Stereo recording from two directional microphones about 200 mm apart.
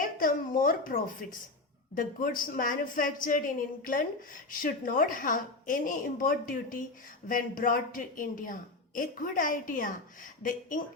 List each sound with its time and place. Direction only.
0.0 s a woman's voice: 45° left (ahead or behind)